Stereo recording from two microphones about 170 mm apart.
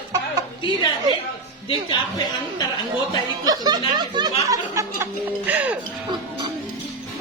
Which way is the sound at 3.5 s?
25° right (ahead or behind).